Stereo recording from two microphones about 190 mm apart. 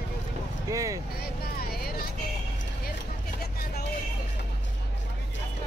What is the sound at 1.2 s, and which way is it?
Vehicle, 55° left (ahead or behind).